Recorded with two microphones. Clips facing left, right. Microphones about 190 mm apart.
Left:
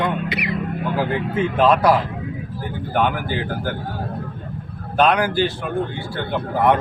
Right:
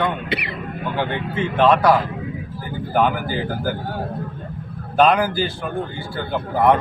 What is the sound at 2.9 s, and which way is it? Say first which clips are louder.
Speech: right 1 dB; centre (ahead or behind).